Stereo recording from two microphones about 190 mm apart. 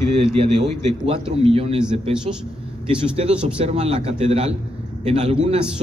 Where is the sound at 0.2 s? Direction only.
30° right (ahead or behind).